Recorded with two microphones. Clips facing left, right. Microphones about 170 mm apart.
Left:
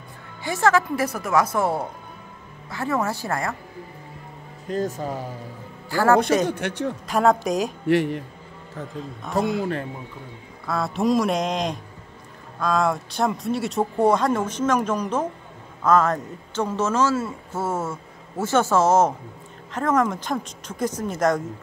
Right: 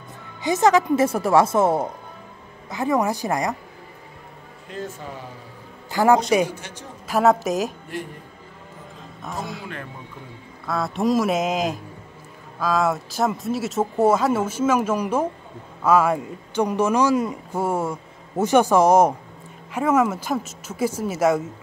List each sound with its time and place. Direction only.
0.4 s a man's voice: 20° right (ahead or behind)
4.6 s speech: 40° left (ahead or behind)
5.9 s a man's voice: 20° right (ahead or behind)
6.5 s a man's voice: 65° left (ahead or behind)
7.1 s speech: 5° right (ahead or behind)
7.9 s a man's voice: 80° left
9.4 s a man's voice: 65° left (ahead or behind)
10.7 s a man's voice: centre (ahead or behind)